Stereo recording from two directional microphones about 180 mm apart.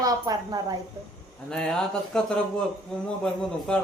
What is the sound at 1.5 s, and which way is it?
A man's voice, 5° left (ahead or behind).